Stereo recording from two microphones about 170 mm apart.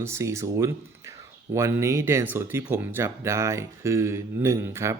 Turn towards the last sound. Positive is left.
turn(degrees=-15)  # may be behind; listen again after turning